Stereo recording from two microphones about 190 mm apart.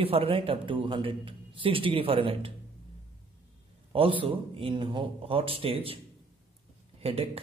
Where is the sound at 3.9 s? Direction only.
25° right (ahead or behind).